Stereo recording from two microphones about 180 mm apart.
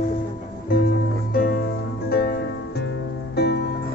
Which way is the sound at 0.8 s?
55° left (ahead or behind).